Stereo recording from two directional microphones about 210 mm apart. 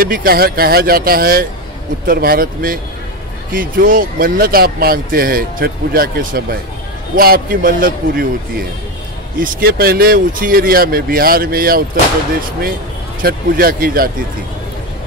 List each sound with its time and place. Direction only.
0.0 s speech: 45° right (ahead or behind)
13.2 s speech: 45° right (ahead or behind)